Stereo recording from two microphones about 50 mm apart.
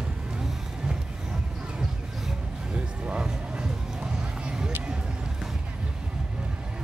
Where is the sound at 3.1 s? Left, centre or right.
Centre.